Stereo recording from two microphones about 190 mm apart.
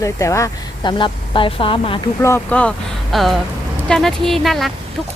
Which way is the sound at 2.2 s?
10° left (ahead or behind).